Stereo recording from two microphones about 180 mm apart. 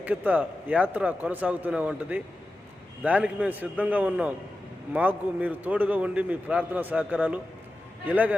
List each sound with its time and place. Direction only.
0.0 s a man's voice: 10° right (ahead or behind)